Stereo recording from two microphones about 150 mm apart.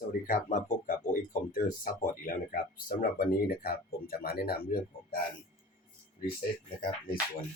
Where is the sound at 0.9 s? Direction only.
65° left (ahead or behind); by 4.8 s 90° left.